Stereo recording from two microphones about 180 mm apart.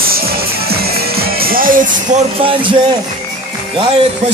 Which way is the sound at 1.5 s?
50° right (ahead or behind).